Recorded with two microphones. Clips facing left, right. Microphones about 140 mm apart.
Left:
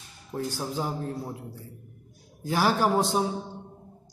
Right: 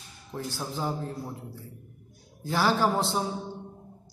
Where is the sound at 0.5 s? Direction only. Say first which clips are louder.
Left 1 dB; 15° left (ahead or behind).